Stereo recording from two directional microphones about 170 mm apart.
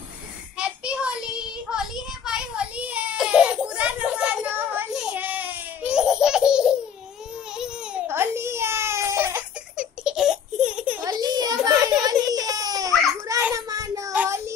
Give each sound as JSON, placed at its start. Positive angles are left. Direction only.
{"t": 0.6, "sound": "child singing", "side_deg": -5}
{"t": 2.2, "sound": "baby cry", "side_deg": -5}
{"t": 11.0, "sound": "a sound", "side_deg": -25}